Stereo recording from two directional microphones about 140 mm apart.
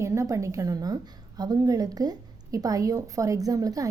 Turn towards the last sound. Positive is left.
turn(degrees=-25)  # may be behind; listen again after turning